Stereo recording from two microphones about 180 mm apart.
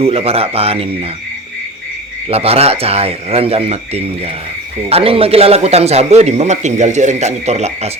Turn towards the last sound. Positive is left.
turn(degrees=-35)  # may be behind; listen again after turning